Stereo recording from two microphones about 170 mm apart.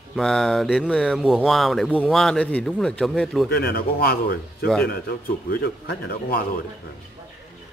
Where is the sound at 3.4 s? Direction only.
70° left (ahead or behind).